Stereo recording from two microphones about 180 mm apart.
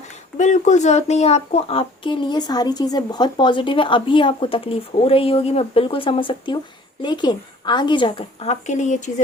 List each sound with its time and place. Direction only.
0.3 s a child's voice: 45° left (ahead or behind)